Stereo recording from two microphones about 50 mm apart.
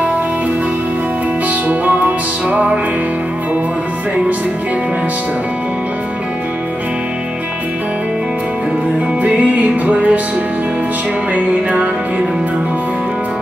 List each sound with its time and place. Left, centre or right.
1.7 s music: right
9.2 s music: right
11.3 s music: right